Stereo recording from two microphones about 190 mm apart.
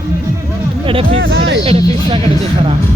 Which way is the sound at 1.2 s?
65° right (ahead or behind).